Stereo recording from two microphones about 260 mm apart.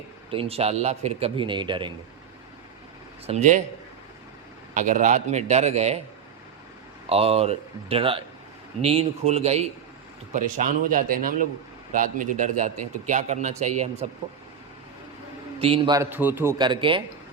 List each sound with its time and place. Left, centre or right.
0.3 s a man's voice: right
3.2 s a man's voice: right
4.7 s a man's voice: right
7.1 s a man's voice: right
15.6 s a man's voice: centre